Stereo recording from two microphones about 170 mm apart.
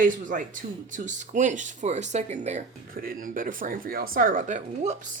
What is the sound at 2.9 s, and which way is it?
Speech, 55° right (ahead or behind).